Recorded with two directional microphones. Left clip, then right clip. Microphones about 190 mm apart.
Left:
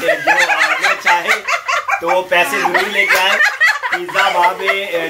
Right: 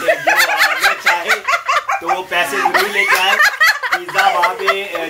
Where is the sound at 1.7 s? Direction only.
20° right (ahead or behind).